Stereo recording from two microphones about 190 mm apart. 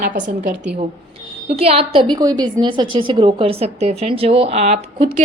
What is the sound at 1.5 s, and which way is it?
A woman's voice, 30° right (ahead or behind).